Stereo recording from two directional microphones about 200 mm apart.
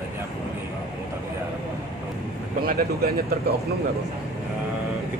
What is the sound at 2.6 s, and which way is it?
Speech, 50° right (ahead or behind).